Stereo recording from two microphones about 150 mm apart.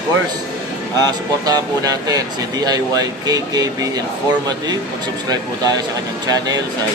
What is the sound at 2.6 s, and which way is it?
Speech, 25° right (ahead or behind).